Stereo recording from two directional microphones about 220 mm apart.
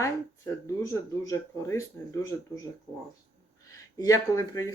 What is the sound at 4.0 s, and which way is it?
Speech, 15° left (ahead or behind).